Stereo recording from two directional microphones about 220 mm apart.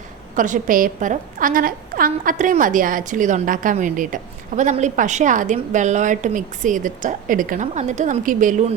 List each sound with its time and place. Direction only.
0.3 s a woman's voice: 35° right (ahead or behind)